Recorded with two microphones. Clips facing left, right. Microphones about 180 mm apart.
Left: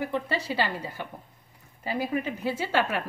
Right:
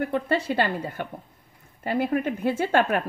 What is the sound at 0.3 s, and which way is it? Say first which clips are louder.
Speech: right 5 dB; 55° right (ahead or behind).